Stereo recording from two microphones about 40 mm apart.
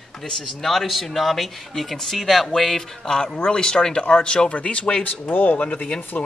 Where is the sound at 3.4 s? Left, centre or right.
Left.